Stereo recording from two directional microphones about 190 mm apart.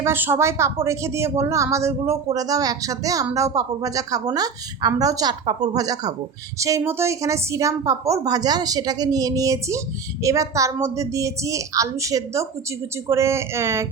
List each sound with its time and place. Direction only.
0.0 s a woman's voice: 10° right (ahead or behind)